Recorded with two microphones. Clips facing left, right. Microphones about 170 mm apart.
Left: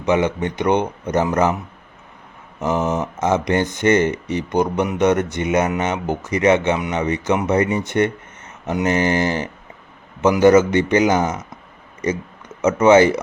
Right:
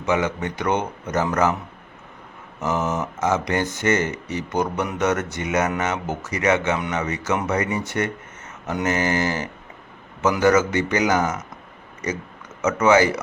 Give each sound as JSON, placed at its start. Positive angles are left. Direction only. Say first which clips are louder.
{"t": 0.0, "sound": "speech", "louder": "left 4 dB", "side_deg": 20}
{"t": 2.6, "sound": "speech", "louder": "left 4 dB", "side_deg": 15}
{"t": 12.6, "sound": "speech", "louder": "left 5 dB", "side_deg": 20}